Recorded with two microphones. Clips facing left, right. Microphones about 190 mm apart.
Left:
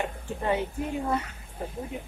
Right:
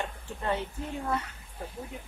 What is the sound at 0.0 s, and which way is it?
Speech, 15° left (ahead or behind).